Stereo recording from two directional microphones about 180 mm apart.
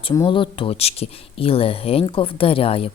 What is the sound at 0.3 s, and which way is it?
Speech, 30° left (ahead or behind).